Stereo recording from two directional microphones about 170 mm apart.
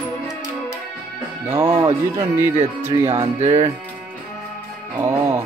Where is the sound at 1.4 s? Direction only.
15° right (ahead or behind).